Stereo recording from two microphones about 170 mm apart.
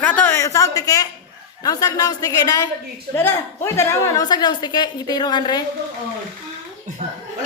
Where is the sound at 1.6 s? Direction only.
20° left (ahead or behind).